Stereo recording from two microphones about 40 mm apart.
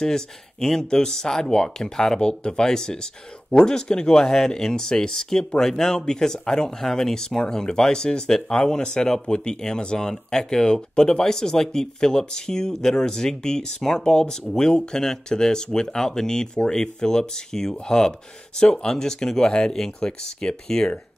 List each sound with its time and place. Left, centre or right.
0.0 s speech: centre